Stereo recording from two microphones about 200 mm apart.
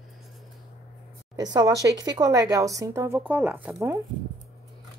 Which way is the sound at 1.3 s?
20° right (ahead or behind).